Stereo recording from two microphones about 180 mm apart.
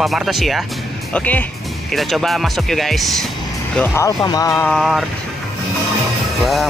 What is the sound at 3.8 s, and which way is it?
Music, 15° left (ahead or behind).